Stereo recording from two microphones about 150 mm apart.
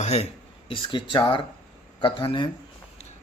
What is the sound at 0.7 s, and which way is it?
Speech, 35° left (ahead or behind).